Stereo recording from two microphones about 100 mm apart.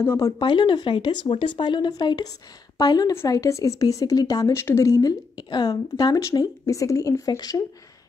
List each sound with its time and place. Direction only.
0.2 s a woman's voice: 50° left (ahead or behind)
3.3 s a woman's voice: 30° left (ahead or behind)
4.6 s a woman's voice: 30° left (ahead or behind)
5.3 s a woman's voice: 45° left (ahead or behind)